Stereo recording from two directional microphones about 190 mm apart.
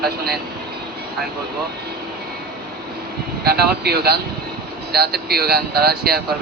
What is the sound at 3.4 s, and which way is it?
Speech, 55° right (ahead or behind).